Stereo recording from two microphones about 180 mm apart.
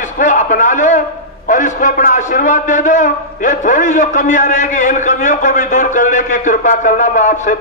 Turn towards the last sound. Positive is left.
turn(degrees=45)  # may be behind; listen again after turning